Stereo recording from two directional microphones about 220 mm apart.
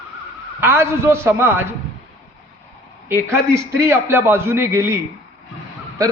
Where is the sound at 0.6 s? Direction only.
10° right (ahead or behind).